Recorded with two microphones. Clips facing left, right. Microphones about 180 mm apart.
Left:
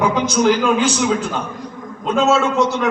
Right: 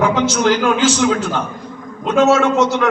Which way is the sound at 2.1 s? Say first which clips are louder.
Right 3 dB; 75° right (ahead or behind).